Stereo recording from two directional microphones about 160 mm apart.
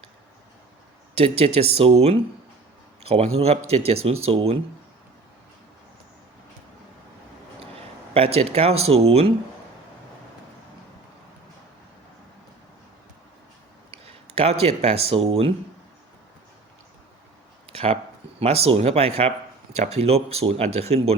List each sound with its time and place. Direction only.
1.1 s speech: 35° right (ahead or behind)
8.1 s speech: 40° right (ahead or behind)
13.9 s a sound: 40° right (ahead or behind)
14.6 s speech: 40° right (ahead or behind)
17.7 s a sound: 40° right (ahead or behind)
18.3 s speech: 40° right (ahead or behind)